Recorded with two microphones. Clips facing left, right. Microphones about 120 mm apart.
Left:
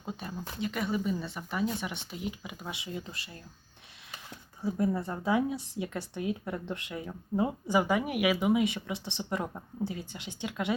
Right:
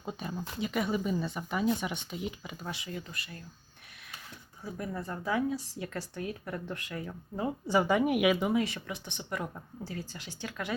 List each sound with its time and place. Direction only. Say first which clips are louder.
0.0 s speech: right 1 dB; centre (ahead or behind)
2.6 s speech: left 1 dB; 20° left (ahead or behind)
4.6 s speech: left 8 dB; 25° left (ahead or behind); by 8.6 s 10° left (ahead or behind)
8.6 s speech: left 5 dB; 20° left (ahead or behind)